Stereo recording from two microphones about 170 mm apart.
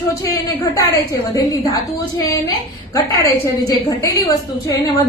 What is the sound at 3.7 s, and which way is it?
A woman's voice, 20° left (ahead or behind).